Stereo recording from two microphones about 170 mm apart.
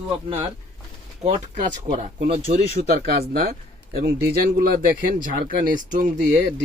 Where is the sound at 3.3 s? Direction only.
60° right (ahead or behind).